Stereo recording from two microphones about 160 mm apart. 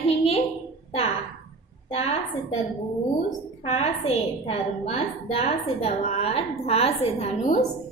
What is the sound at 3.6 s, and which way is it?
A woman's voice, 40° left (ahead or behind).